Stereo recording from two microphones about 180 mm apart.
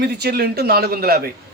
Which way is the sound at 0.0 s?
65° right (ahead or behind).